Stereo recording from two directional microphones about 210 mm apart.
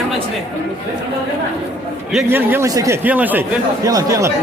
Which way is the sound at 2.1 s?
5° right (ahead or behind).